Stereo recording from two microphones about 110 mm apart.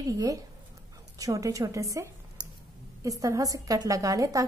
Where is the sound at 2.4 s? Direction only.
40° right (ahead or behind).